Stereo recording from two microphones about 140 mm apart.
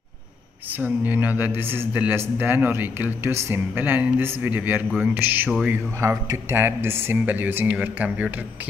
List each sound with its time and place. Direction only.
0.7 s speech: 15° right (ahead or behind)
5.9 s speech: 20° right (ahead or behind)